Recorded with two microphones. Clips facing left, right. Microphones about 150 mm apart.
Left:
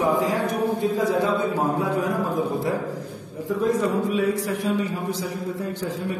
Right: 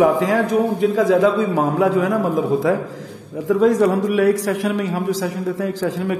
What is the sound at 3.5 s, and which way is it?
A man's voice, 90° right.